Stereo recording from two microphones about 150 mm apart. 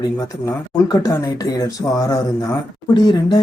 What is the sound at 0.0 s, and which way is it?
Speech, 25° left (ahead or behind).